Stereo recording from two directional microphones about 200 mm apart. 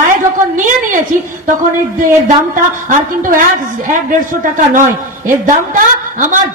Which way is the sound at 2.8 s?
40° right (ahead or behind).